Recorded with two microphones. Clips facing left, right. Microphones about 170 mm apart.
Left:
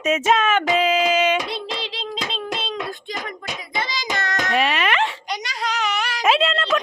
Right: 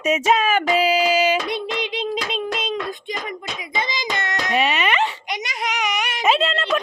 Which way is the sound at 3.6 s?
20° right (ahead or behind).